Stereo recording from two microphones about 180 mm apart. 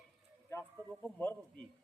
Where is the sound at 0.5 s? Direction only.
20° left (ahead or behind).